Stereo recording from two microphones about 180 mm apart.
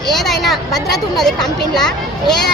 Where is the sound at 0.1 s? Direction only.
Centre (ahead or behind).